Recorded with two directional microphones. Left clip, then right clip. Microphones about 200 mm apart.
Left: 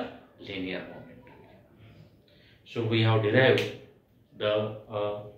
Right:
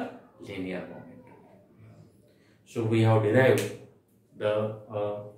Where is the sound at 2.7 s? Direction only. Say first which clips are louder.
Right 2 dB; 15° right (ahead or behind).